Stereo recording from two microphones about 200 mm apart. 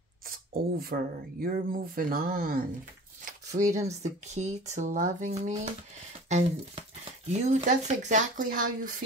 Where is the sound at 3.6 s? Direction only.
15° right (ahead or behind).